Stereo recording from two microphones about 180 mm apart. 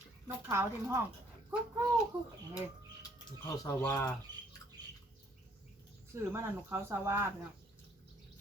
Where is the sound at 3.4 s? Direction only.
15° left (ahead or behind).